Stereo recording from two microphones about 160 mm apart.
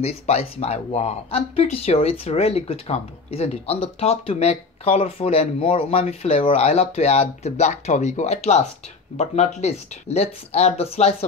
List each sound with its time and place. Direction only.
0.0 s speech: 40° left (ahead or behind)